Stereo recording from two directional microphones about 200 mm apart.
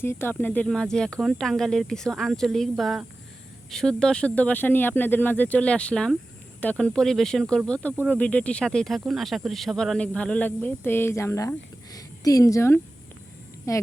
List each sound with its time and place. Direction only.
0.0 s a woman's voice: 10° left (ahead or behind)